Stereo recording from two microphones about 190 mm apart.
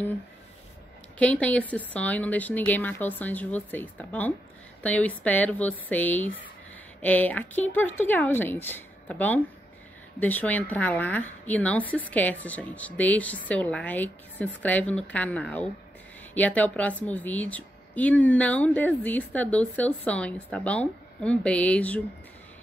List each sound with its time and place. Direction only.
1.1 s a woman's voice: 5° left (ahead or behind)